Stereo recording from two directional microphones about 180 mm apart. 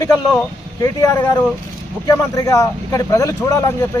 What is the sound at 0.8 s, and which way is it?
A man's voice, 20° left (ahead or behind).